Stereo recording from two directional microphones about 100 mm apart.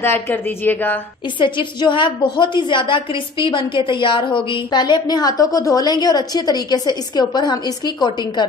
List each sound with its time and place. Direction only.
0.0 s speech: 25° left (ahead or behind)
1.4 s a woman's voice: 55° left (ahead or behind)